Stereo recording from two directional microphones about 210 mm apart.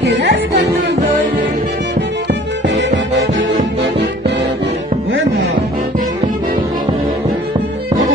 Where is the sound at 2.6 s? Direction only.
60° right (ahead or behind).